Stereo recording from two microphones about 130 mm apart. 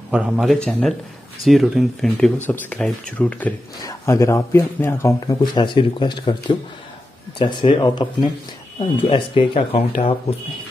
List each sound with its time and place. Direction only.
0.1 s speech: 5° right (ahead or behind); by 3.5 s 10° left (ahead or behind)
3.8 s speech: 20° left (ahead or behind); by 9.8 s 45° left (ahead or behind)